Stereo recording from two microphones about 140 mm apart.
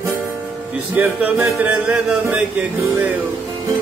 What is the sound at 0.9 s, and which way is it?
Music, 15° right (ahead or behind).